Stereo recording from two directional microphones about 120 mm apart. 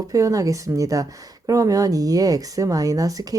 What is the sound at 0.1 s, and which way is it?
Speech, 30° right (ahead or behind).